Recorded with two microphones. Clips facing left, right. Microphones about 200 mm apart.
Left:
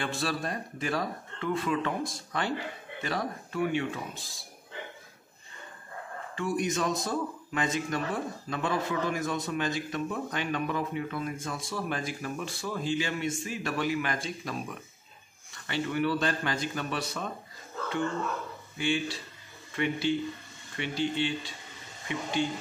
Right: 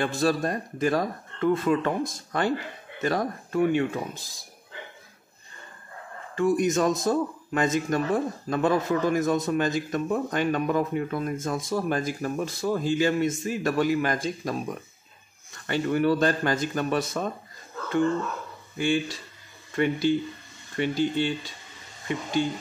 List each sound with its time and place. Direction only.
0.0 s a man's voice: 45° right (ahead or behind)
6.3 s a man's voice: 45° right (ahead or behind)
18.8 s a man's voice: 45° right (ahead or behind)